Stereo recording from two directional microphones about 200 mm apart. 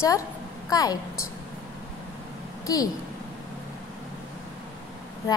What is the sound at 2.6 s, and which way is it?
Speech, 20° left (ahead or behind).